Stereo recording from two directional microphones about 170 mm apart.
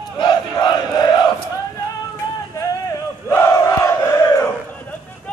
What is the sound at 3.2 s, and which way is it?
Battle cry, 20° left (ahead or behind).